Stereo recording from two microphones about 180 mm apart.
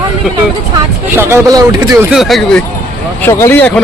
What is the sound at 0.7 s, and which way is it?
Speech, 15° right (ahead or behind).